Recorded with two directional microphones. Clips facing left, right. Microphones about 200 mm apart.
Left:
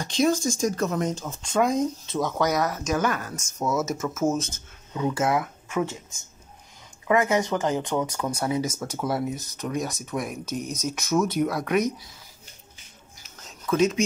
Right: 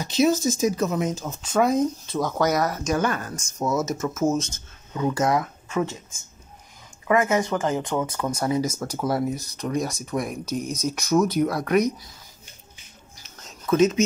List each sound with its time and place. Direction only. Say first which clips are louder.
0.0 s speech: right 2 dB; 5° right (ahead or behind)
3.5 s speech: right 1 dB; 10° right (ahead or behind)
4.9 s speech: right 2 dB; 5° left (ahead or behind)
7.1 s speech: right 1 dB; 15° left (ahead or behind); by 11.6 s centre (ahead or behind)
13.5 s a sound: right 3 dB; 5° right (ahead or behind)